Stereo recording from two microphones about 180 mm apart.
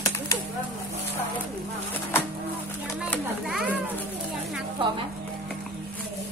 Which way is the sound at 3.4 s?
5° right (ahead or behind).